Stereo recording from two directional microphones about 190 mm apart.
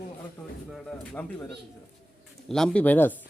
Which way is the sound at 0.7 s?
5° left (ahead or behind).